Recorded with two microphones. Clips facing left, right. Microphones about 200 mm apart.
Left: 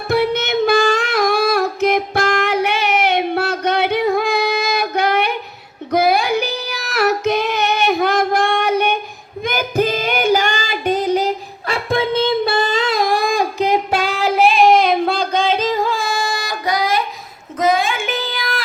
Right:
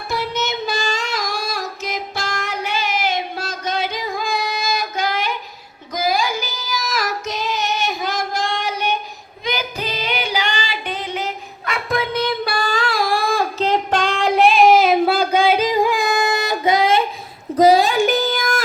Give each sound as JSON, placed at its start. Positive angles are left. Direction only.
{"t": 0.1, "sound": "female singing", "side_deg": 60}
{"t": 17.6, "sound": "child singing", "side_deg": -35}